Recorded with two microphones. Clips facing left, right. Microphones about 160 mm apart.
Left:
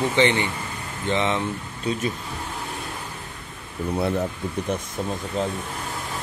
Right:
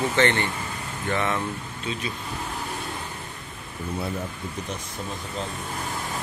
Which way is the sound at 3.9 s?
70° left (ahead or behind).